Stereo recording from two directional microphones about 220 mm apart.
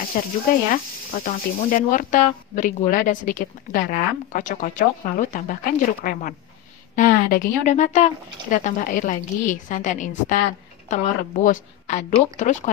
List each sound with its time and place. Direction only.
0.2 s speech: 40° left (ahead or behind)